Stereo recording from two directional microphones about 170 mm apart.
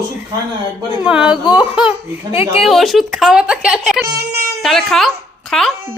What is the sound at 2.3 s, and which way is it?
Speech, 35° left (ahead or behind).